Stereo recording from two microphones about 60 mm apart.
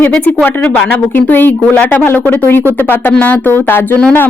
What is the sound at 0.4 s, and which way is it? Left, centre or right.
A woman's voice, left.